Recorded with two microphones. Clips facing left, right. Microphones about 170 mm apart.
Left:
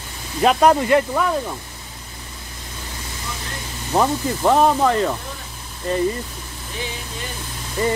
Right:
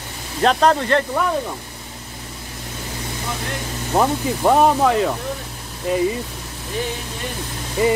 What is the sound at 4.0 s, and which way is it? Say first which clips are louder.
Speech: even; 5° right (ahead or behind).